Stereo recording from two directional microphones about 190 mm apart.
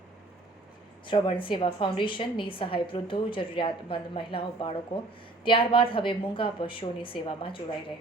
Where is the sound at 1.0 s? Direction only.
25° left (ahead or behind).